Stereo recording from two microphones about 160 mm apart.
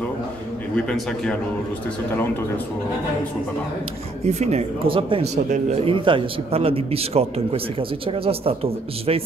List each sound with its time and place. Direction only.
0.7 s a man's voice: 5° left (ahead or behind)
4.3 s a man's voice: 45° right (ahead or behind)